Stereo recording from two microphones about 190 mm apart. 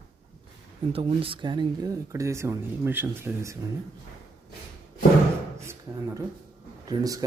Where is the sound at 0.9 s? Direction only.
30° right (ahead or behind); by 3.6 s 15° right (ahead or behind).